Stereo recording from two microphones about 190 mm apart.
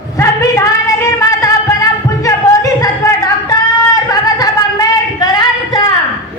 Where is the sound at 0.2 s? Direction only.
15° left (ahead or behind).